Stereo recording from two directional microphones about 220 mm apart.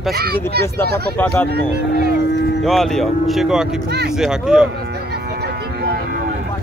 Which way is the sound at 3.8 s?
45° right (ahead or behind).